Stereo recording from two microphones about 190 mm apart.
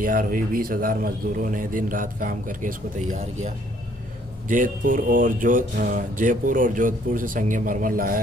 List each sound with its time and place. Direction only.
0.0 s music: 45° right (ahead or behind)
4.5 s music: 45° right (ahead or behind)